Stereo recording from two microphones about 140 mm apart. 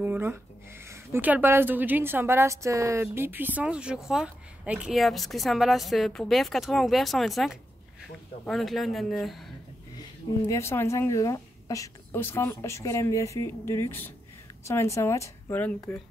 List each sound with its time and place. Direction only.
0.0 s a man's voice: 15° right (ahead or behind)
10.5 s a woman's voice: 20° left (ahead or behind)